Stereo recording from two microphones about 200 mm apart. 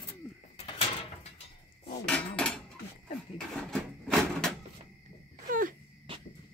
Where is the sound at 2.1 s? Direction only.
5° left (ahead or behind).